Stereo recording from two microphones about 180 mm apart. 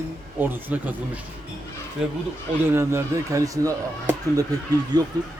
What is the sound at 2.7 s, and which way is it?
A man's voice, 15° right (ahead or behind).